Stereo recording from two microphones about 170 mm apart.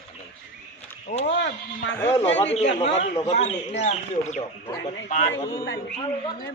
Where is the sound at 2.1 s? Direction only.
40° left (ahead or behind).